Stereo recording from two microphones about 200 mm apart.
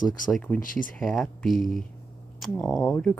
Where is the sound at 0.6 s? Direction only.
45° left (ahead or behind).